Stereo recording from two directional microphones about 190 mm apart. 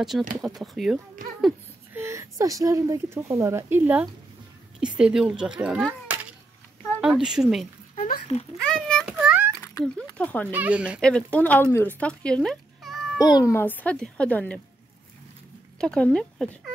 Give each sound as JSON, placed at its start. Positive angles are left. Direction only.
{"t": 0.1, "sound": "speech", "side_deg": -5}
{"t": 2.0, "sound": "speech", "side_deg": -15}
{"t": 7.9, "sound": "a sound", "side_deg": 40}
{"t": 8.6, "sound": "a sound", "side_deg": 5}
{"t": 9.8, "sound": "speech", "side_deg": 20}
{"t": 10.1, "sound": "speech", "side_deg": 5}
{"t": 10.5, "sound": "speech", "side_deg": -10}
{"t": 11.0, "sound": "speech", "side_deg": 5}
{"t": 13.2, "sound": "speech", "side_deg": 20}
{"t": 15.8, "sound": "speech", "side_deg": 5}